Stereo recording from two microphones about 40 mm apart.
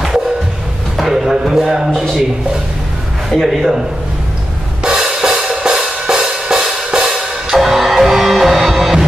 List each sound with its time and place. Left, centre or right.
0.9 s a sound: centre
3.3 s speech: centre
4.8 s music: centre
7.5 s music: centre